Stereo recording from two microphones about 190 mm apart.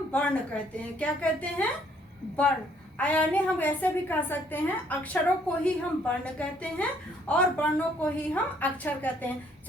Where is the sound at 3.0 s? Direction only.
5° left (ahead or behind).